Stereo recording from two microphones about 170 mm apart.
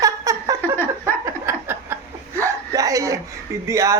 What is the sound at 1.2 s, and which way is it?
Chuckle, 15° right (ahead or behind).